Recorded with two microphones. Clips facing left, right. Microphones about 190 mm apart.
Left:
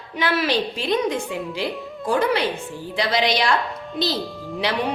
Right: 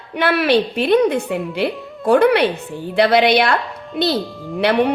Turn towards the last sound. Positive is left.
turn(degrees=-60)  # may be behind; listen again after turning